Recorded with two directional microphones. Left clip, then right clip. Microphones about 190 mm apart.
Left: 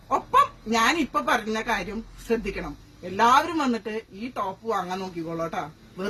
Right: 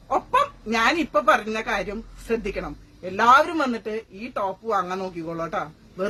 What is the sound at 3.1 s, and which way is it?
A man's voice, 15° right (ahead or behind).